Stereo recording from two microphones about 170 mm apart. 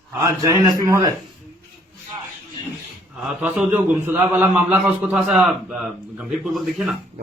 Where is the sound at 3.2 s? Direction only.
5° right (ahead or behind).